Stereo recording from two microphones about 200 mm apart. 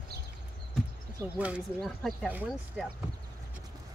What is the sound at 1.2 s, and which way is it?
Speech, 5° right (ahead or behind).